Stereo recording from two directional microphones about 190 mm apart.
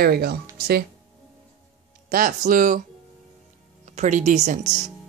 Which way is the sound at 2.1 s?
45° right (ahead or behind).